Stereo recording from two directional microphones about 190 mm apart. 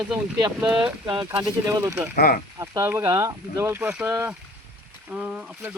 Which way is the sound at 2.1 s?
50° left (ahead or behind).